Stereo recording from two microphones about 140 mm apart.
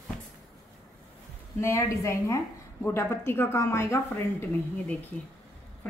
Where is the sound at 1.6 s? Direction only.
20° left (ahead or behind).